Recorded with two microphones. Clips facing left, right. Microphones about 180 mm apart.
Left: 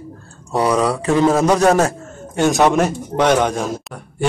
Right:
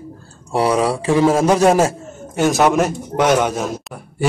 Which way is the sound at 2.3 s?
5° right (ahead or behind).